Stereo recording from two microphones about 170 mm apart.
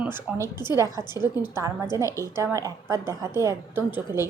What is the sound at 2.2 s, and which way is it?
Speech, 15° right (ahead or behind).